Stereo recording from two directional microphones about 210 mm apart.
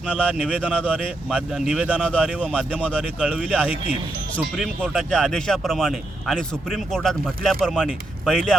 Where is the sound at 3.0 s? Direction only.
5° right (ahead or behind).